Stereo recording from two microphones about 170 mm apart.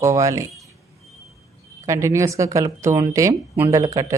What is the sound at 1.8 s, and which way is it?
Speech, 15° right (ahead or behind).